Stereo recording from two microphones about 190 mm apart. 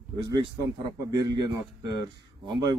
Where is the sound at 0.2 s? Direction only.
20° right (ahead or behind).